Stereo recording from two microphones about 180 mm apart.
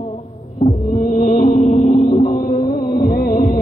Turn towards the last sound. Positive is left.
turn(degrees=50)  # may be behind; listen again after turning